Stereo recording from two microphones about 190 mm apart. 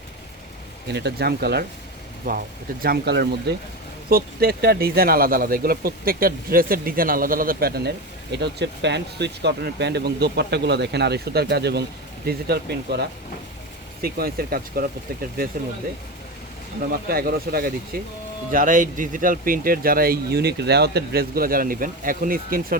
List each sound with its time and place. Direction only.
0.9 s speech: 60° right (ahead or behind)
2.3 s speech: 45° right (ahead or behind)
2.8 s speech: 55° right (ahead or behind)
16.9 s speech: 50° right (ahead or behind)